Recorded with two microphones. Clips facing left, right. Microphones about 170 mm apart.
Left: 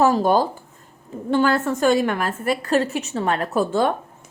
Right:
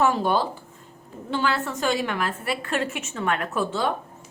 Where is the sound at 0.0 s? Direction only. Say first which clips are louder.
Left 5 dB; 40° left (ahead or behind).